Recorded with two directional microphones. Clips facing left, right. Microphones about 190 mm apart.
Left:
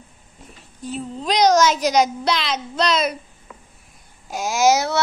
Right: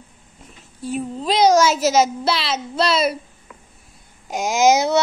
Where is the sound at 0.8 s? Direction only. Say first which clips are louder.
Right 2 dB; 5° right (ahead or behind).